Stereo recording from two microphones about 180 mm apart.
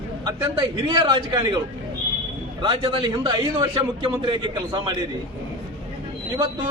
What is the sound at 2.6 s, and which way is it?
A man's voice, 30° right (ahead or behind).